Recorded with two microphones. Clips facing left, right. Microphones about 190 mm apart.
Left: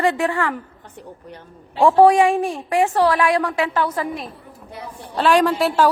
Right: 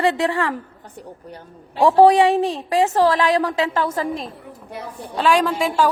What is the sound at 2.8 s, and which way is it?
Speech, 25° right (ahead or behind).